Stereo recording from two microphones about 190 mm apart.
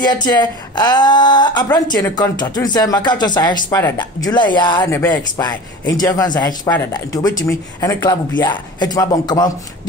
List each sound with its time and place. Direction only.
0.3 s speech: 20° left (ahead or behind)